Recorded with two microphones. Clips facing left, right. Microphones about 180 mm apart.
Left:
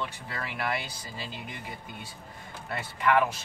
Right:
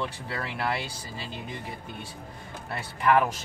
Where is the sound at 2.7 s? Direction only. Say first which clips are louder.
Right 2 dB; 35° right (ahead or behind).